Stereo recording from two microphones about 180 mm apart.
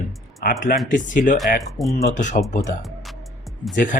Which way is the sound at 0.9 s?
45° left (ahead or behind).